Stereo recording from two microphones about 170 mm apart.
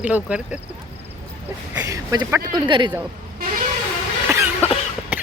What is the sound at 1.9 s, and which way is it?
Speech, 20° right (ahead or behind).